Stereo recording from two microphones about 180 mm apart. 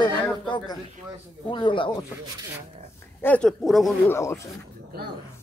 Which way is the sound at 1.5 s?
25° left (ahead or behind).